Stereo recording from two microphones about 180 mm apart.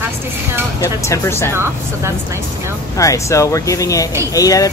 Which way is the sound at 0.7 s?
15° left (ahead or behind).